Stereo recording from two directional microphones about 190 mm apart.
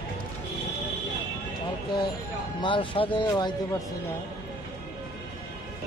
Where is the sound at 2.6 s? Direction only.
25° left (ahead or behind).